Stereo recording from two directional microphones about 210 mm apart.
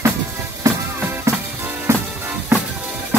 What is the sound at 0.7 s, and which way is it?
Music, 15° right (ahead or behind).